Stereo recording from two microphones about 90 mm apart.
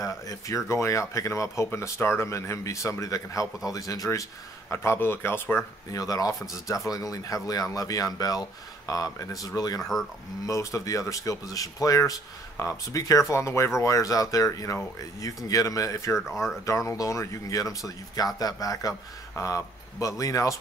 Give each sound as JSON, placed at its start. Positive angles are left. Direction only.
{"t": 0.0, "sound": "speech", "side_deg": 35}
{"t": 5.9, "sound": "speech", "side_deg": 40}